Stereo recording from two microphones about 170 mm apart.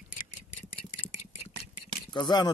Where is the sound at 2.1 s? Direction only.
25° left (ahead or behind).